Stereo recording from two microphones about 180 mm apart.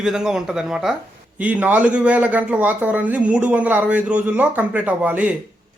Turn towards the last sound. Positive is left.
turn(degrees=-10)  # may be behind; listen again after turning